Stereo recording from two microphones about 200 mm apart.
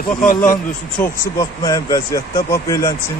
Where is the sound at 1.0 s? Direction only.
15° left (ahead or behind).